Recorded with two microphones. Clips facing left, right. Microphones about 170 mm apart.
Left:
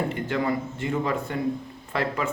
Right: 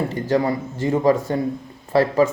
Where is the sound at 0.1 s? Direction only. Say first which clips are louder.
Right 6 dB; 40° right (ahead or behind).